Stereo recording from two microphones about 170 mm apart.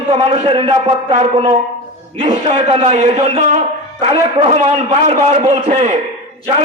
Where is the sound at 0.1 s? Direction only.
35° right (ahead or behind).